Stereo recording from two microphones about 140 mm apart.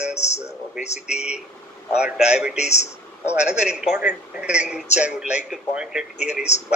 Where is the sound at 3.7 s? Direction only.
5° right (ahead or behind).